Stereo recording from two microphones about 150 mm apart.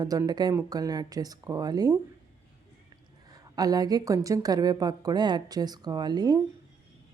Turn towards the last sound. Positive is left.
turn(degrees=-30)  # may be behind; listen again after turning